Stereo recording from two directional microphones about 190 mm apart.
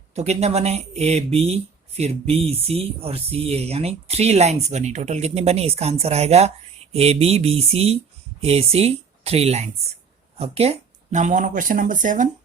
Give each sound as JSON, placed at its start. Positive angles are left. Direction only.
{"t": 0.1, "sound": "speech", "side_deg": -35}